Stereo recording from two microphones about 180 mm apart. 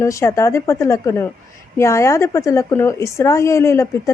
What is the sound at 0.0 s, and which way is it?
A woman's voice, 15° left (ahead or behind).